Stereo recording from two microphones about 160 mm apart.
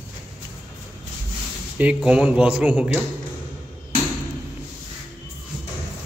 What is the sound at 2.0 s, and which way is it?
Speech, 5° right (ahead or behind).